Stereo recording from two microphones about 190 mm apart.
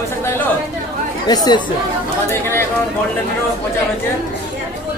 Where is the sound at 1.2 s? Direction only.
20° left (ahead or behind).